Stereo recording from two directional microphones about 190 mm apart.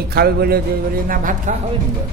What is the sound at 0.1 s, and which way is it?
Music, 55° right (ahead or behind).